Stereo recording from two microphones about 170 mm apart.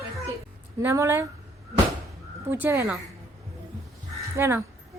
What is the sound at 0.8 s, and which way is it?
Speech, 15° right (ahead or behind).